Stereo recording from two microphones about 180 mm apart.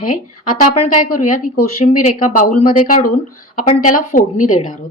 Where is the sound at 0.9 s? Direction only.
45° left (ahead or behind).